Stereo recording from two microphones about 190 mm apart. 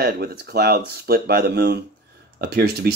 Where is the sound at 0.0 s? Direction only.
55° right (ahead or behind).